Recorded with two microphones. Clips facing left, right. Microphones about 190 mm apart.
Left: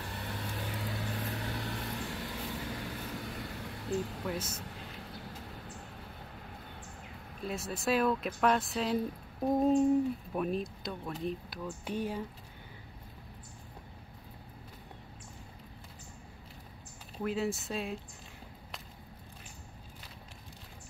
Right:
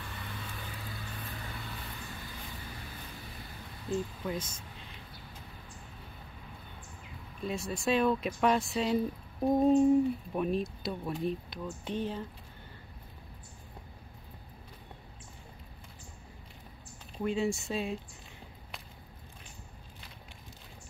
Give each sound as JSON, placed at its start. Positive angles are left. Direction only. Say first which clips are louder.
{"t": 0.2, "sound": "vehicle", "louder": "left 6 dB", "side_deg": 65}
{"t": 4.3, "sound": "speech", "louder": "even", "side_deg": 5}
{"t": 7.4, "sound": "speech", "louder": "right 2 dB", "side_deg": 0}
{"t": 17.2, "sound": "speech", "louder": "right 2 dB", "side_deg": 0}